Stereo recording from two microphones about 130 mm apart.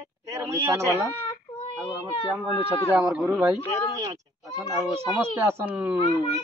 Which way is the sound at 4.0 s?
25° right (ahead or behind).